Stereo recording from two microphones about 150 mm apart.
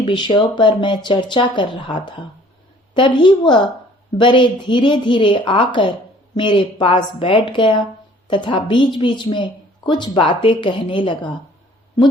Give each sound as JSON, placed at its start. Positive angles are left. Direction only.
{"t": 0.0, "sound": "a woman's voice", "side_deg": 30}